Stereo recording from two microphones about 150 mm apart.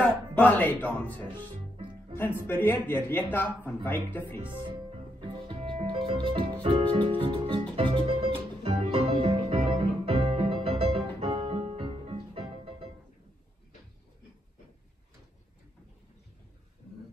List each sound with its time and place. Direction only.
0.4 s a man's voice: 10° left (ahead or behind)
1.3 s music: 35° right (ahead or behind)
2.1 s a man's voice: 15° left (ahead or behind)
4.4 s music: 35° right (ahead or behind)